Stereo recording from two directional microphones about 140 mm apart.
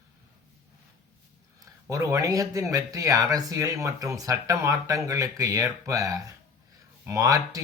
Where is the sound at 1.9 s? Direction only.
20° right (ahead or behind).